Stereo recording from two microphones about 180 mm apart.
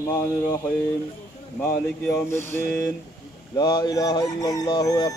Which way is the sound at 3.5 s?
20° left (ahead or behind).